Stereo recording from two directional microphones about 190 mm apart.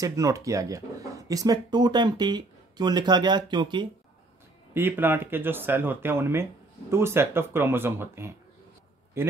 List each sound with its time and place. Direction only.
0.0 s speech: 15° right (ahead or behind)
4.7 s speech: 10° right (ahead or behind)